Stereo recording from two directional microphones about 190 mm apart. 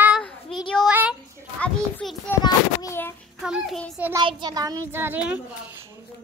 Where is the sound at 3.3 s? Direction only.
Centre (ahead or behind).